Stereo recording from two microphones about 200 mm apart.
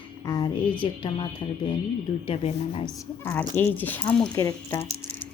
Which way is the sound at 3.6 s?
10° left (ahead or behind).